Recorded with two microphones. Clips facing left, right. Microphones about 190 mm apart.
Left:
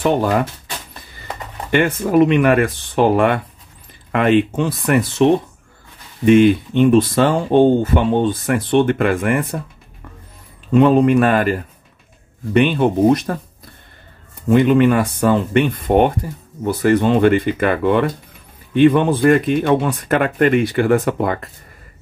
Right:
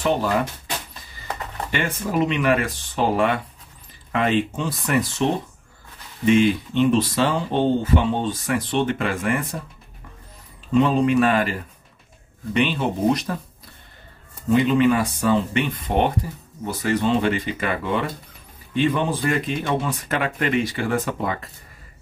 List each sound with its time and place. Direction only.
0.0 s speech: 55° left (ahead or behind)
1.7 s speech: 55° left (ahead or behind)
6.2 s speech: 55° left (ahead or behind)
10.7 s speech: 55° left (ahead or behind)
12.5 s speech: 55° left (ahead or behind)
14.5 s speech: 55° left (ahead or behind)